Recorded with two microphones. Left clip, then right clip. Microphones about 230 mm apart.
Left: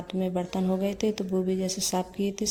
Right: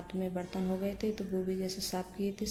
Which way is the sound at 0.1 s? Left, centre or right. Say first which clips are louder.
Left 8 dB; left.